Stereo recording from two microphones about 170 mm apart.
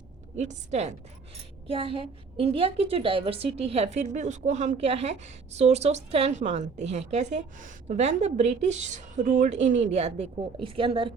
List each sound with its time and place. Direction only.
0.3 s a woman's voice: 40° right (ahead or behind)